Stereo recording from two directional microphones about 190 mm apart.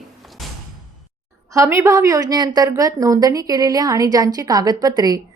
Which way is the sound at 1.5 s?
15° right (ahead or behind).